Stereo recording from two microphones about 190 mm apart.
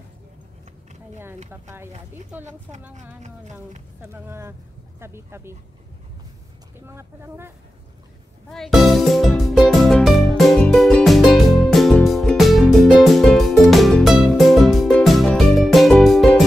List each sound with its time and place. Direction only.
1.5 s speech: 10° right (ahead or behind)
3.2 s speech: 40° right (ahead or behind)
4.0 s speech: 15° right (ahead or behind)
6.9 s speech: 15° right (ahead or behind)
8.5 s music: centre (ahead or behind)